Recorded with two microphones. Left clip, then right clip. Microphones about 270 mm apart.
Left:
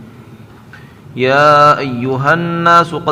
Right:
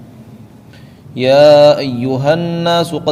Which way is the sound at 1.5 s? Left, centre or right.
Centre.